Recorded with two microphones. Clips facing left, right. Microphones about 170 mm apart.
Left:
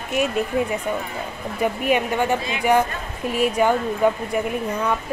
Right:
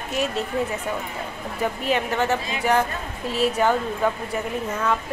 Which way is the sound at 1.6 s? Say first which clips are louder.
Left 3 dB; 15° left (ahead or behind).